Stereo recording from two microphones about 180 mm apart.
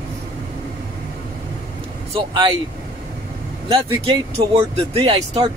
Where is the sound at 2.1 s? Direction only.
25° right (ahead or behind).